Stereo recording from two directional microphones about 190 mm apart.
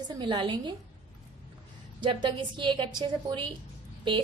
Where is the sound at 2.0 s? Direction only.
25° right (ahead or behind).